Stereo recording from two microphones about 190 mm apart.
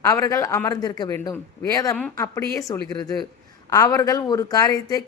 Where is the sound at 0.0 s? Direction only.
15° left (ahead or behind).